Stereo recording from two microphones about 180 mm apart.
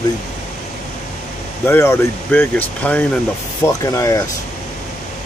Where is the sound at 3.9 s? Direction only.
20° left (ahead or behind).